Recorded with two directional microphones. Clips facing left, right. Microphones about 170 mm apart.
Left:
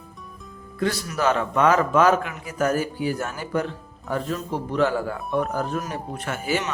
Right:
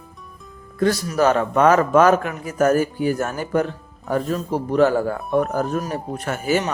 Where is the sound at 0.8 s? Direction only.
40° right (ahead or behind).